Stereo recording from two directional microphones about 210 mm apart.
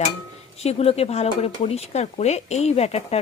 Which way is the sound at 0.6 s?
30° left (ahead or behind).